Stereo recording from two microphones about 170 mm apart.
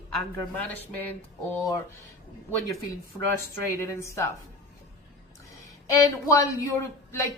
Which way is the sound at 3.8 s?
15° left (ahead or behind).